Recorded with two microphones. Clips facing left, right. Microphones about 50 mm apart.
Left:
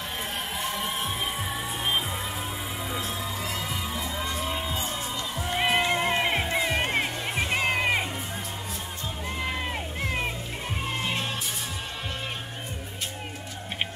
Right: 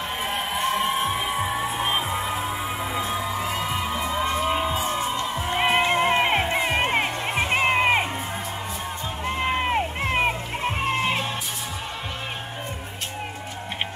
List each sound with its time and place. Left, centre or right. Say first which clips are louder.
0.2 s music: right 7 dB; right
9.2 s music: right 7 dB; right